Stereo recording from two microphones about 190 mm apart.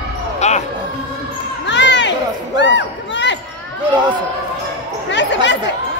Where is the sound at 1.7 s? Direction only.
70° left (ahead or behind).